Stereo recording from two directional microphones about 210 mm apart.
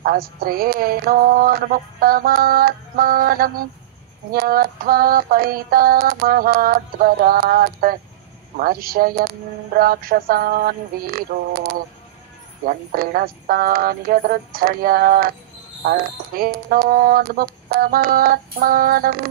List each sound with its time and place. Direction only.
0.0 s synthetic singing: 45° right (ahead or behind)